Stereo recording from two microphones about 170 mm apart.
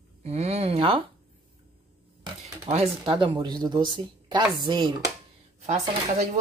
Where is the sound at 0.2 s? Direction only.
40° right (ahead or behind).